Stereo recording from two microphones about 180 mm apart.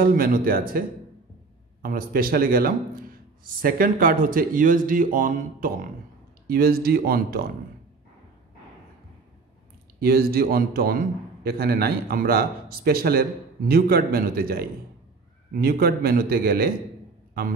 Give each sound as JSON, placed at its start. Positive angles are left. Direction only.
{"t": 0.0, "sound": "speech", "side_deg": -50}
{"t": 6.4, "sound": "a man's voice", "side_deg": -60}
{"t": 9.9, "sound": "a man's voice", "side_deg": -55}